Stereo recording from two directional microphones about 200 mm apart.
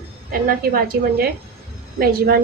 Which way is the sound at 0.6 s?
50° right (ahead or behind).